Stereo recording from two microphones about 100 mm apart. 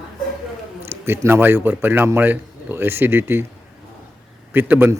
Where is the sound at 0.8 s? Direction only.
25° right (ahead or behind).